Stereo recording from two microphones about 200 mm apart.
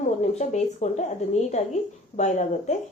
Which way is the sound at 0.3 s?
35° left (ahead or behind).